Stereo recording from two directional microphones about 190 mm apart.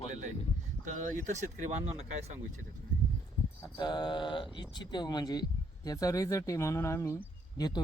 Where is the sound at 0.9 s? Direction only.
40° right (ahead or behind).